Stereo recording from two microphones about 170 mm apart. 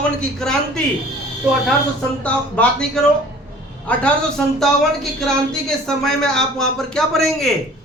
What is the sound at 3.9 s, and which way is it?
A woman's voice, 10° left (ahead or behind).